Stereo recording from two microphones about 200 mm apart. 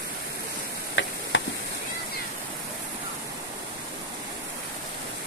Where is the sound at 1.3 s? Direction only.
75° left (ahead or behind).